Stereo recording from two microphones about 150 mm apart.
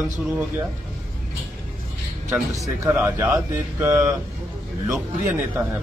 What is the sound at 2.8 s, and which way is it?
A man's voice, 15° right (ahead or behind).